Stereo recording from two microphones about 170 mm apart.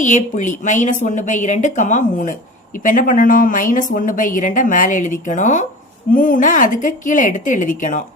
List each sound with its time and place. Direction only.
0.0 s a woman's voice: 45° left (ahead or behind)